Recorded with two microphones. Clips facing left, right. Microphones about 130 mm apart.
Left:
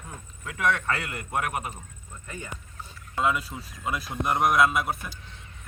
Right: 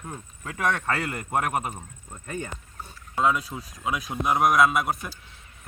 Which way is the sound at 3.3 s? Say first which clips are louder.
Right 3 dB; centre (ahead or behind).